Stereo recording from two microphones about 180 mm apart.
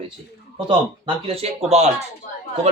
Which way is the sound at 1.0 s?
30° right (ahead or behind).